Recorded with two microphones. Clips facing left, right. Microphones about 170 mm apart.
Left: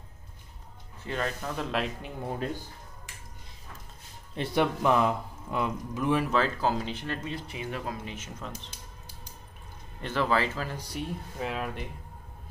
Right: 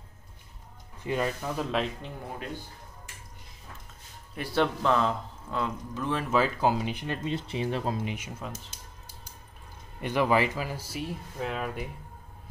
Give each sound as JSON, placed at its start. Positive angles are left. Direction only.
{"t": 1.0, "sound": "speech", "side_deg": -10}
{"t": 4.4, "sound": "speech", "side_deg": 15}
{"t": 6.3, "sound": "speech", "side_deg": -10}
{"t": 8.0, "sound": "speech", "side_deg": -15}
{"t": 10.0, "sound": "speech", "side_deg": -15}